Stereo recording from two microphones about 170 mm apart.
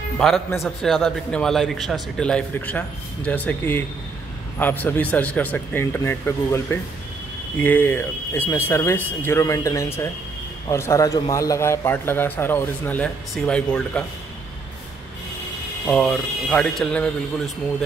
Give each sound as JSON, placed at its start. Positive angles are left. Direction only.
{"t": 0.2, "sound": "a man's voice", "side_deg": 5}
{"t": 15.9, "sound": "a man's voice", "side_deg": 5}